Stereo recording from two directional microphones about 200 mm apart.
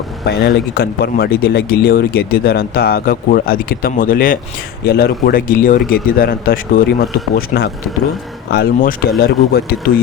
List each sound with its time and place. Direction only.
0.3 s speech: 55° left (ahead or behind)